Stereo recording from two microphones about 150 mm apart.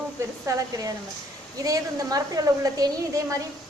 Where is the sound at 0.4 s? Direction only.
25° right (ahead or behind).